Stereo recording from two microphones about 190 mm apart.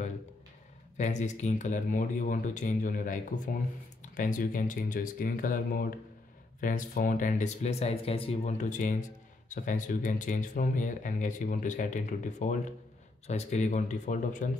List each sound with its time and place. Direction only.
0.9 s speech: 40° left (ahead or behind)